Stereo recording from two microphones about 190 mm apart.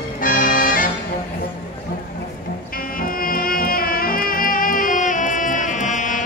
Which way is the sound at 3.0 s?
50° left (ahead or behind).